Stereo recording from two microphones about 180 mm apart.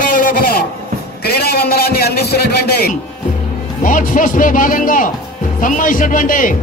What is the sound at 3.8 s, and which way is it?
A man's voice, 45° left (ahead or behind).